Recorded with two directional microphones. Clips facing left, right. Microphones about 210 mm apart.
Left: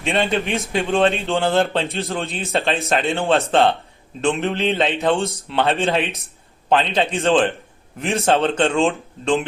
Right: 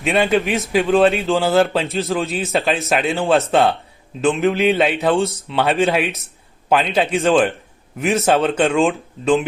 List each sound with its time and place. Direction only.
0.0 s a man's voice: 5° right (ahead or behind)